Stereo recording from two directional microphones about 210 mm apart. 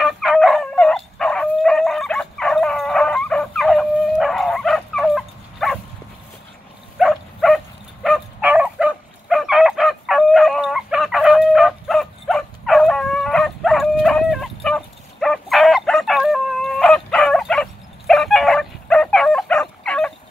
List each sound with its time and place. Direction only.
0.0 s dog: centre (ahead or behind)
7.0 s dog: centre (ahead or behind)